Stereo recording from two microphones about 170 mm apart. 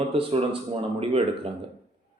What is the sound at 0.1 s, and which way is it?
A man's voice, 35° right (ahead or behind).